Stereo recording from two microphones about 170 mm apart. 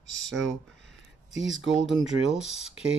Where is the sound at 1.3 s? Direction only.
90° right.